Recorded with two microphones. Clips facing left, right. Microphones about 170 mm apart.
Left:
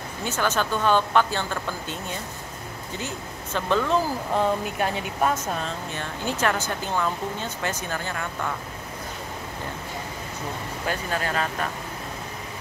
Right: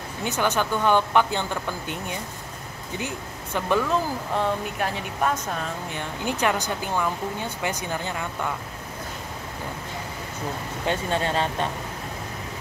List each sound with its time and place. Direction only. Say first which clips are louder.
0.2 s speech: right 1 dB; 15° right (ahead or behind)
4.4 s speech: left 2 dB; centre (ahead or behind)
5.9 s speech: right 1 dB; 15° right (ahead or behind)
10.9 s speech: right 3 dB; 25° right (ahead or behind)